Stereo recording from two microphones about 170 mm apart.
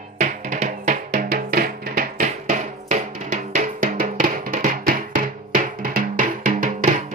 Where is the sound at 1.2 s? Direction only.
60° right (ahead or behind).